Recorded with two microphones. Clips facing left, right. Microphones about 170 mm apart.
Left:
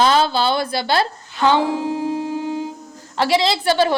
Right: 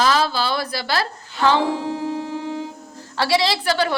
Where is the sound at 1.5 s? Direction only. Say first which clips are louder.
Left 2 dB; 15° left (ahead or behind).